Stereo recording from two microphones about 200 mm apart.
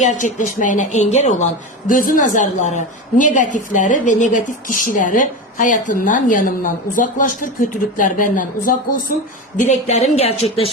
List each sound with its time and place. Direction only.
0.0 s a woman's voice: 40° left (ahead or behind)